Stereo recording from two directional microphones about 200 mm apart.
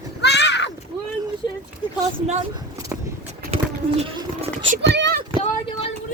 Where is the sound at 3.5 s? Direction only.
30° right (ahead or behind).